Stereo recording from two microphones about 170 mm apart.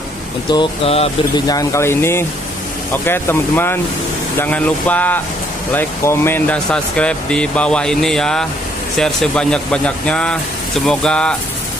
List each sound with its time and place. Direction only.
0.5 s speech: 30° left (ahead or behind)
1.5 s speech: 20° left (ahead or behind)